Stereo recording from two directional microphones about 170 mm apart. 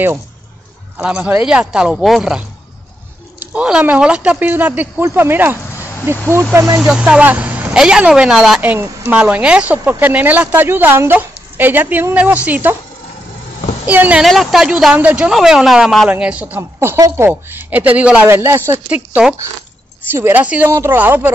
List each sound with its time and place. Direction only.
0.9 s speech: 10° right (ahead or behind)
6.8 s speech: 5° right (ahead or behind)
13.8 s speech: 10° right (ahead or behind)
20.1 s speech: 15° right (ahead or behind)